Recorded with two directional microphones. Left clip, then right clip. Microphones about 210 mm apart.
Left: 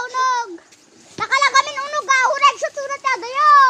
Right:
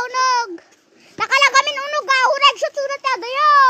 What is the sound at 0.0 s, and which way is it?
Bathtub, 40° right (ahead or behind).